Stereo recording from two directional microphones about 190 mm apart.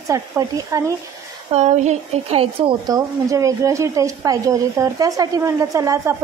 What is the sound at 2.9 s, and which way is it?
A woman's voice, 15° right (ahead or behind).